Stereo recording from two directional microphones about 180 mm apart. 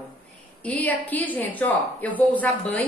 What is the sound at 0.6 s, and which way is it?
A woman's voice, 10° left (ahead or behind).